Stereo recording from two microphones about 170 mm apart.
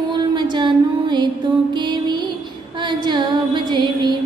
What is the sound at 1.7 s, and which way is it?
Music, 25° right (ahead or behind).